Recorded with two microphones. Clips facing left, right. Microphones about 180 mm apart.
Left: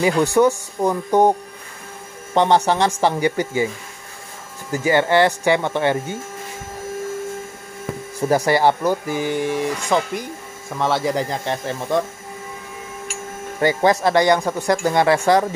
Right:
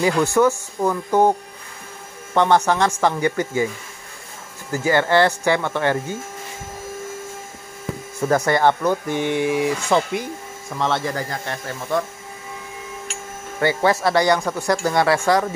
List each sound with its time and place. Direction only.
0.0 s speech: 15° left (ahead or behind)
2.3 s speech: 15° left (ahead or behind)
4.7 s speech: 15° left (ahead or behind)
8.2 s speech: 10° left (ahead or behind)
10.8 s speech: 15° left (ahead or behind)
13.6 s speech: 15° left (ahead or behind)